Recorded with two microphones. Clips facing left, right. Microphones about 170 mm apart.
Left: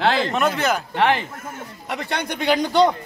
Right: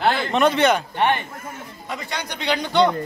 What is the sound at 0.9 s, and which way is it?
Speech, 90° left.